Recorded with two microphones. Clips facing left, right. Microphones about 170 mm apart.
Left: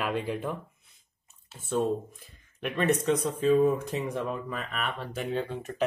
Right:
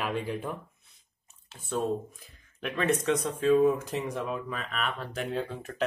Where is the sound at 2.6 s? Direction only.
Centre (ahead or behind).